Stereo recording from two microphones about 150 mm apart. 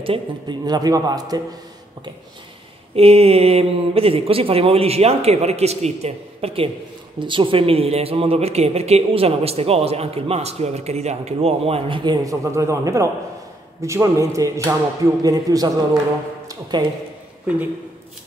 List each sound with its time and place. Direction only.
0.0 s a man's voice: 35° right (ahead or behind)
3.0 s a man's voice: 40° right (ahead or behind)